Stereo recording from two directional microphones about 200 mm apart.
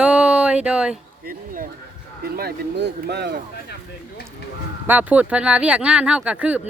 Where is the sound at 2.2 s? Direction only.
50° right (ahead or behind).